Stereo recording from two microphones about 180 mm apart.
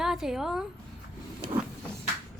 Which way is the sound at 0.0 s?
Centre (ahead or behind).